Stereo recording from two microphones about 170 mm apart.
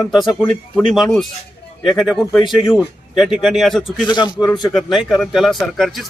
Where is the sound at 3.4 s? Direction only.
Centre (ahead or behind).